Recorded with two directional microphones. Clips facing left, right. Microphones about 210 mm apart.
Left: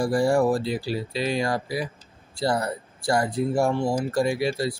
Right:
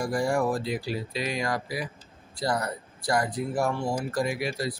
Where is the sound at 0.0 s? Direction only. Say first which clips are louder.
Left 5 dB; 30° left (ahead or behind).